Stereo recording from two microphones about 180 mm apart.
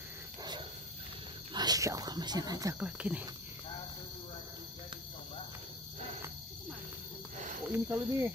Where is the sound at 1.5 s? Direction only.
20° right (ahead or behind).